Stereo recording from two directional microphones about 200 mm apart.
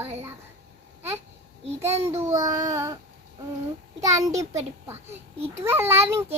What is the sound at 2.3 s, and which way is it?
Speech, 15° right (ahead or behind).